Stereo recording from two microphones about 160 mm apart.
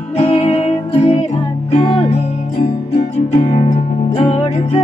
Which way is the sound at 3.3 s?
45° left (ahead or behind).